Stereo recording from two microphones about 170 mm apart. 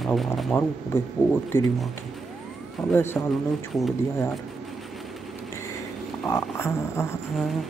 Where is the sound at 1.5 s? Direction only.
15° left (ahead or behind).